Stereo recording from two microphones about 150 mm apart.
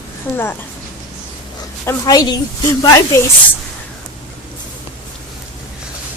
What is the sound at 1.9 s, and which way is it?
A woman's voice, 25° left (ahead or behind).